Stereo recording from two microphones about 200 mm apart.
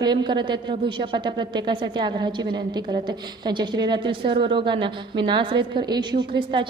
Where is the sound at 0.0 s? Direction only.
20° right (ahead or behind).